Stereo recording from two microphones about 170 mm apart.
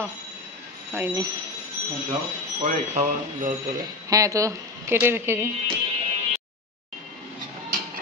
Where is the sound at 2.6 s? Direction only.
45° right (ahead or behind).